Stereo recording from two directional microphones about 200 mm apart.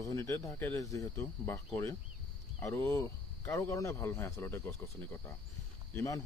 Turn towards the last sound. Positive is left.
turn(degrees=15)  # may be behind; listen again after turning